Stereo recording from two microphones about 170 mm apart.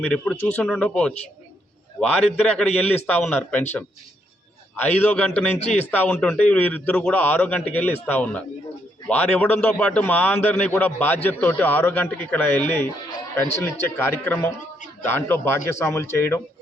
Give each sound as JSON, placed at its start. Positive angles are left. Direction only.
{"t": 0.0, "sound": "a man's voice", "side_deg": 5}
{"t": 4.8, "sound": "a man's voice", "side_deg": 10}
{"t": 5.5, "sound": "a man's voice", "side_deg": 40}
{"t": 5.9, "sound": "a man's voice", "side_deg": 10}